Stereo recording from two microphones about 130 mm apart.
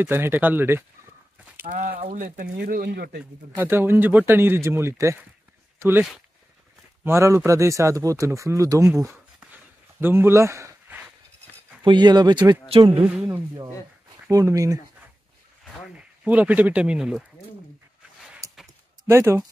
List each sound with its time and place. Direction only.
0.0 s a man's voice: 15° right (ahead or behind)
2.1 s speech: 90° right
3.5 s a man's voice: 15° right (ahead or behind)
7.1 s speech: 20° right (ahead or behind)
9.9 s a sound: 15° right (ahead or behind)
11.8 s speech: 35° right (ahead or behind)
12.6 s speech: 45° right (ahead or behind)
12.9 s a man's voice: 15° right (ahead or behind)
14.3 s speech: 25° right (ahead or behind)
15.6 s speech: 10° right (ahead or behind)
19.0 s speech: 20° right (ahead or behind)